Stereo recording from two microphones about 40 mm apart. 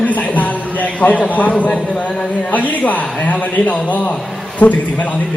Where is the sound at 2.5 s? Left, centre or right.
Left.